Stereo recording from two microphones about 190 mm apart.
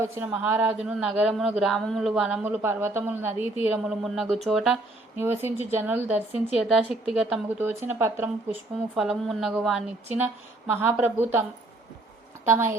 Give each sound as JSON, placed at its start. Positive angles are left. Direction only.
{"t": 0.0, "sound": "a woman's voice", "side_deg": -10}
{"t": 5.1, "sound": "speech", "side_deg": -10}
{"t": 9.0, "sound": "a woman's voice", "side_deg": 0}
{"t": 12.5, "sound": "speech", "side_deg": -15}